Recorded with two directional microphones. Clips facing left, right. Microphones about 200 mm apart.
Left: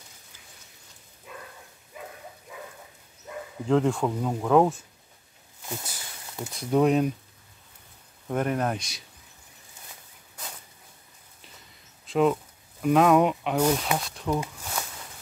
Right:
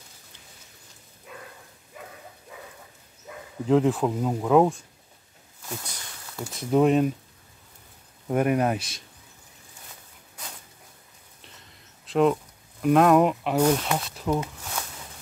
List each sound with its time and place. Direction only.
3.6 s speech: 5° right (ahead or behind)
6.5 s speech: centre (ahead or behind)
8.3 s speech: 10° right (ahead or behind)
12.1 s speech: centre (ahead or behind)